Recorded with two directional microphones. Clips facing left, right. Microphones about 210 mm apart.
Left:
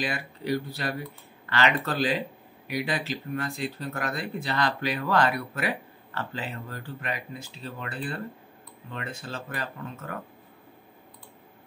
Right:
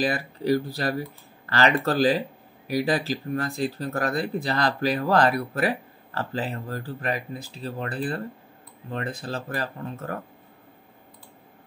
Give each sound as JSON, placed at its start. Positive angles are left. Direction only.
{"t": 0.0, "sound": "speech", "side_deg": -35}